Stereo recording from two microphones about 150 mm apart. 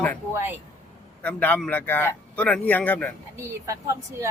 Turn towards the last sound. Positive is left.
turn(degrees=-20)  # may be behind; listen again after turning